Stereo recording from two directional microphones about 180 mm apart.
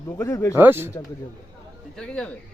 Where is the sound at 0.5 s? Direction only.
10° right (ahead or behind).